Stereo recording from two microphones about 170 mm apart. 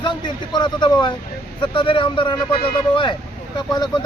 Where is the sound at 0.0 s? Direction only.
25° left (ahead or behind).